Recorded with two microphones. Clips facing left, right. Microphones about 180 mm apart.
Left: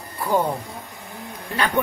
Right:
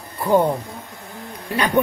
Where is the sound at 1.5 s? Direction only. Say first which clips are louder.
Right 4 dB; 15° right (ahead or behind).